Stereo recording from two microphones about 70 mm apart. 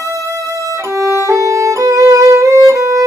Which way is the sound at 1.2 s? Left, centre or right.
Right.